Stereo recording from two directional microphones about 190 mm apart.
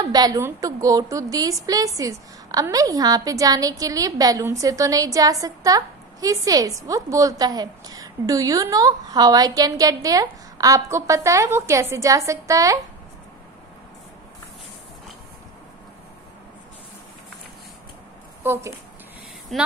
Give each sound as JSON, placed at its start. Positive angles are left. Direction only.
{"t": 0.0, "sound": "a woman's voice", "side_deg": -20}
{"t": 18.4, "sound": "a woman's voice", "side_deg": -10}
{"t": 19.5, "sound": "speech", "side_deg": 0}